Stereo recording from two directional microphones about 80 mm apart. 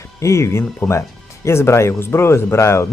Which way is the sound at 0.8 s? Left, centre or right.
Left.